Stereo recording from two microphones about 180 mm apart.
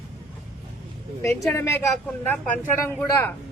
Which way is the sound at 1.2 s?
15° left (ahead or behind).